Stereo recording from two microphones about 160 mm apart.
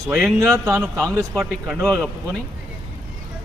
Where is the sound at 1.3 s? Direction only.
5° right (ahead or behind).